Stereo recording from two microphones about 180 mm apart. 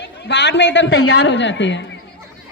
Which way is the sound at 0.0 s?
75° left (ahead or behind).